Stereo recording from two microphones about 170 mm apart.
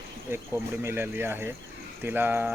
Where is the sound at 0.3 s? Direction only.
15° right (ahead or behind).